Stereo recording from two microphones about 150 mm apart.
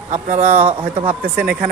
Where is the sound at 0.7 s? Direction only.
30° right (ahead or behind).